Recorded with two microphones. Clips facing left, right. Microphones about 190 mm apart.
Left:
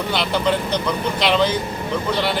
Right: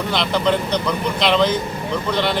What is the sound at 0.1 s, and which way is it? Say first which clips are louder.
Mantra: right 1 dB; 5° left (ahead or behind).